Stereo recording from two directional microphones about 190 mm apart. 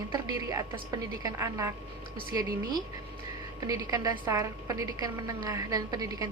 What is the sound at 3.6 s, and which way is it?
A woman's voice, 20° right (ahead or behind).